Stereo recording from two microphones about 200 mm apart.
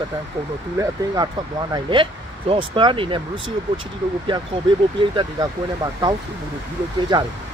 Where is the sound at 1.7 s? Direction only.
25° right (ahead or behind).